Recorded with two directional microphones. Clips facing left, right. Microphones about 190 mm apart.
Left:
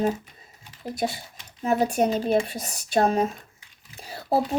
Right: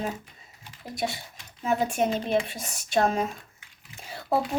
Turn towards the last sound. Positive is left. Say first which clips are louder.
# left 2 dB
turn(degrees=35)  # may be behind; listen again after turning